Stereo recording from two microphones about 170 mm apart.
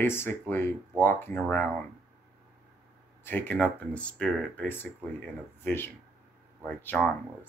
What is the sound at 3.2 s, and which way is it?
Speech, 10° left (ahead or behind).